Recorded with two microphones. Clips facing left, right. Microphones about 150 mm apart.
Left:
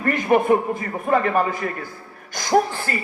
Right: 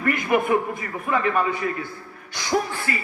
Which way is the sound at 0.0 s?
35° left (ahead or behind).